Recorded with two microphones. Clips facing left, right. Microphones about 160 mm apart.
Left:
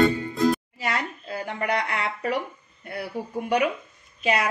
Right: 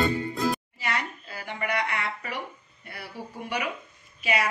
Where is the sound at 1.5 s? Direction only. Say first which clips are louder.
Left 2 dB; 45° left (ahead or behind).